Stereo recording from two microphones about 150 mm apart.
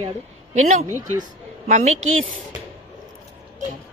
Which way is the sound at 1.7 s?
50° right (ahead or behind).